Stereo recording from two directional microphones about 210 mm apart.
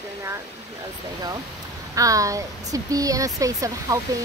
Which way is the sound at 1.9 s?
15° right (ahead or behind).